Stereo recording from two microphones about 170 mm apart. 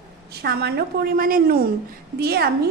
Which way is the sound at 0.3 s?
70° right (ahead or behind).